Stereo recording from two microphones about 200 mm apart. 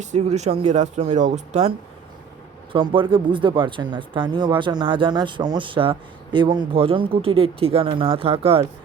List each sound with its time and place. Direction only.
0.0 s speech: 35° right (ahead or behind)
2.7 s speech: 25° right (ahead or behind)